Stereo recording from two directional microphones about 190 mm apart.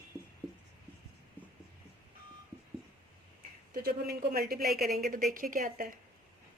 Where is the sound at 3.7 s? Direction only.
50° right (ahead or behind).